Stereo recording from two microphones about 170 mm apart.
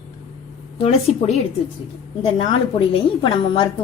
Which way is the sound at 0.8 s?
35° left (ahead or behind).